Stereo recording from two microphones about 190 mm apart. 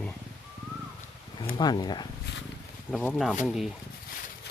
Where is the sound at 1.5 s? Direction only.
20° left (ahead or behind).